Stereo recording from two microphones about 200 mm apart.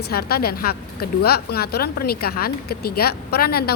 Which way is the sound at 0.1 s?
50° left (ahead or behind).